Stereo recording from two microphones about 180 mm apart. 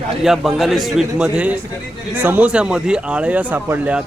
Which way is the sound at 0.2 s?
Centre (ahead or behind).